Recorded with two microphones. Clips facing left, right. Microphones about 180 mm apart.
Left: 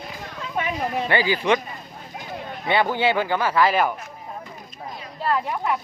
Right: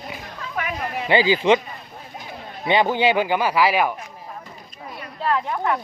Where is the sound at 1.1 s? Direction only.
15° right (ahead or behind).